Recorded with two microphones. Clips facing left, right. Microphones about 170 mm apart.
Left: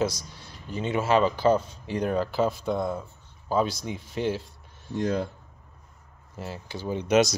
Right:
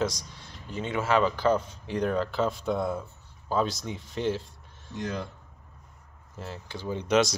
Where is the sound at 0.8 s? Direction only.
25° left (ahead or behind).